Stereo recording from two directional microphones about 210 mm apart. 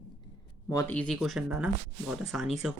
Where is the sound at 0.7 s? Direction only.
10° left (ahead or behind).